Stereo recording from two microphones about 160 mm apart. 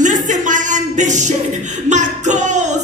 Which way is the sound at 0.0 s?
50° right (ahead or behind).